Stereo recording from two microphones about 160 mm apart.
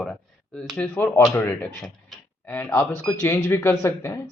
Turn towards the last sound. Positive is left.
turn(degrees=15)  # may be behind; listen again after turning